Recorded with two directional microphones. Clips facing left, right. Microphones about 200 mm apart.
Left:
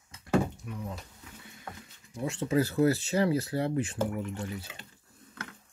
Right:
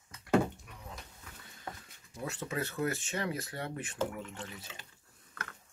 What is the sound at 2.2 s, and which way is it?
Speech, 30° left (ahead or behind).